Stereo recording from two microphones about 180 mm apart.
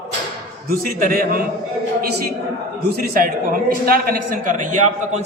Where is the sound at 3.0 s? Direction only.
55° right (ahead or behind).